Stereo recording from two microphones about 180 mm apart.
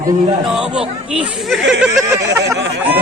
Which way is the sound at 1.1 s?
Centre (ahead or behind).